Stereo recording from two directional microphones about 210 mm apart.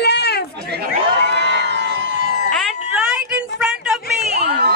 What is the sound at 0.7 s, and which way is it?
Chatter, 50° right (ahead or behind).